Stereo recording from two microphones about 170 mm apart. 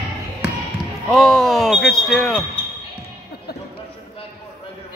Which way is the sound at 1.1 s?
Centre (ahead or behind).